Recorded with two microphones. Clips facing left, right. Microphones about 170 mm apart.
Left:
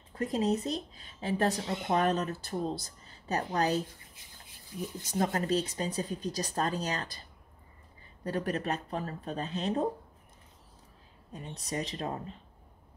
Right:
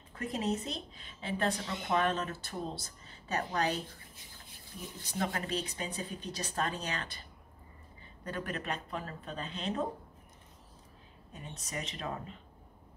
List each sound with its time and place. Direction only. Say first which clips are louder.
0.1 s a woman's voice: left 5 dB; 35° left (ahead or behind)
5.0 s a woman's voice: left 5 dB; 40° left (ahead or behind)
11.6 s a woman's voice: left 5 dB; 35° left (ahead or behind)